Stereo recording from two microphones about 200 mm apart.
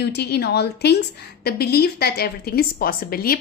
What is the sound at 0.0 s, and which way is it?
A woman's voice, 55° left (ahead or behind).